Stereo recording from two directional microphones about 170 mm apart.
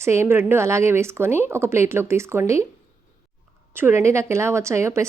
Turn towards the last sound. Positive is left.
turn(degrees=-15)  # may be behind; listen again after turning